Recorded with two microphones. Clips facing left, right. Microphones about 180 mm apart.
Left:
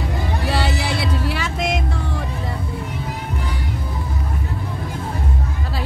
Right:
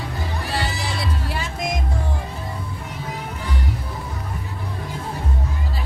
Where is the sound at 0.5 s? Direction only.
75° left (ahead or behind).